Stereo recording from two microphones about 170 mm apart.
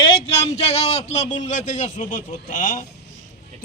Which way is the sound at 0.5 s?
40° left (ahead or behind).